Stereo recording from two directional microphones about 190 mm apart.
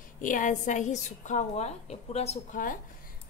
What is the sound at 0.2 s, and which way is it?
A woman's voice, 45° left (ahead or behind).